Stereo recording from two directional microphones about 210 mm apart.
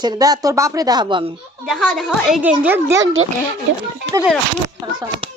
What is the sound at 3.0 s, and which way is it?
Speech, 65° right (ahead or behind).